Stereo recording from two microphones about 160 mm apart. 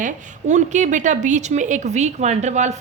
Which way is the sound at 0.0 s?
50° right (ahead or behind).